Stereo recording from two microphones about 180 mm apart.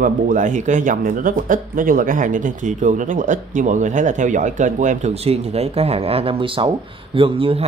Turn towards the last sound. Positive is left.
turn(degrees=-30)  # may be behind; listen again after turning